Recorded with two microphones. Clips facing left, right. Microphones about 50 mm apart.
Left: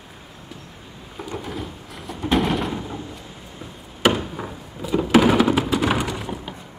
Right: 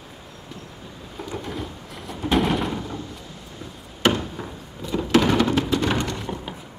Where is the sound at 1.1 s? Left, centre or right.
Centre.